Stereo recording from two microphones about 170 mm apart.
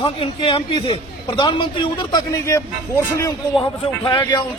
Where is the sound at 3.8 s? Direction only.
30° left (ahead or behind).